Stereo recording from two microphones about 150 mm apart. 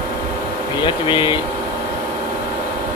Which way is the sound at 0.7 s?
30° left (ahead or behind).